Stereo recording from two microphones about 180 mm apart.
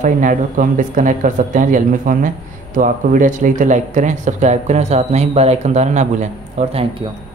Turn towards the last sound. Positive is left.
turn(degrees=-40)  # may be behind; listen again after turning